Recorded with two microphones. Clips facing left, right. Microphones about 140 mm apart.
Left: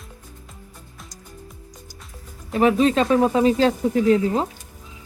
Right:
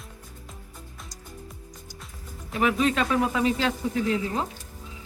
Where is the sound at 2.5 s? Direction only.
35° left (ahead or behind).